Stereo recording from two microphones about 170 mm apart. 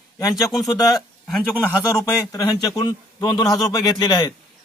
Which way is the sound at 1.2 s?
Centre (ahead or behind).